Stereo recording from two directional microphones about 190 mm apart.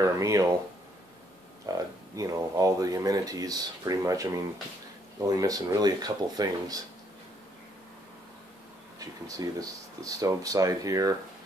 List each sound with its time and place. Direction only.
0.0 s speech: 15° right (ahead or behind)
1.7 s speech: 20° right (ahead or behind)
9.0 s speech: 20° right (ahead or behind)